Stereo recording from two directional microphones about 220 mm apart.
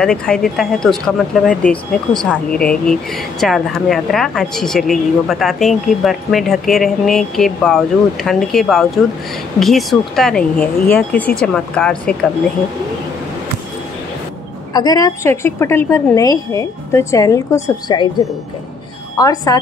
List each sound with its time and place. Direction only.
0.0 s speech: 5° left (ahead or behind)
14.7 s a woman's voice: 15° left (ahead or behind)
19.1 s a woman's voice: 15° left (ahead or behind)